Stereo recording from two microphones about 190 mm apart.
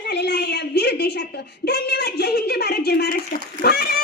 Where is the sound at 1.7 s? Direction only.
60° left (ahead or behind).